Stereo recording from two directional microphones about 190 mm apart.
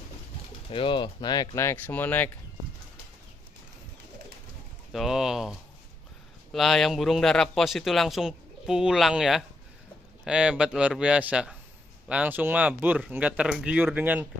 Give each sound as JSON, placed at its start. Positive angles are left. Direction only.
{"t": 0.7, "sound": "speech", "side_deg": 25}
{"t": 4.9, "sound": "a man's voice", "side_deg": 0}